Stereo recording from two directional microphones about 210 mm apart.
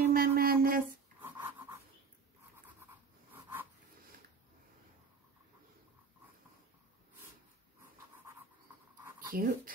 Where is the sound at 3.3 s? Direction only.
10° right (ahead or behind).